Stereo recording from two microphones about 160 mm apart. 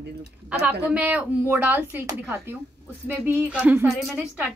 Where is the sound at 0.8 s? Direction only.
10° right (ahead or behind).